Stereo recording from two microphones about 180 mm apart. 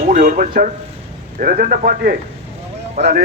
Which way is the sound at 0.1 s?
50° right (ahead or behind).